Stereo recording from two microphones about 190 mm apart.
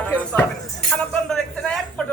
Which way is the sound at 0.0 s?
10° left (ahead or behind).